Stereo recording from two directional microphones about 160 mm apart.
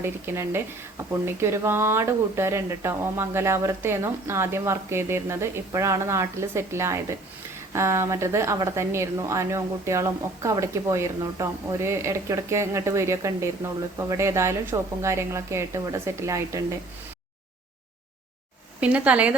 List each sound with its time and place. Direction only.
0.0 s speech: 15° right (ahead or behind)
18.8 s speech: 10° right (ahead or behind)